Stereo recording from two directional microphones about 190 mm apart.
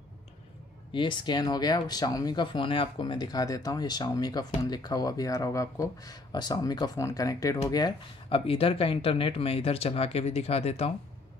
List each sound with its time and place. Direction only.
0.9 s speech: 25° left (ahead or behind)